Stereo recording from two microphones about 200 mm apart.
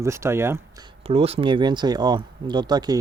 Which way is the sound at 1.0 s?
30° right (ahead or behind).